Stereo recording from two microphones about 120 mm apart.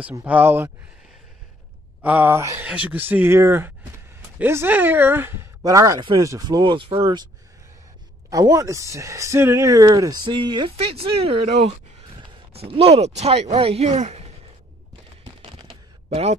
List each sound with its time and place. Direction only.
0.2 s speech: 15° right (ahead or behind)
2.0 s speech: 15° right (ahead or behind); by 7.2 s 45° right (ahead or behind)
8.3 s speech: 30° right (ahead or behind)
10.8 s speech: 50° right (ahead or behind)
12.5 s speech: 55° right (ahead or behind)
15.4 s a sound: 55° right (ahead or behind)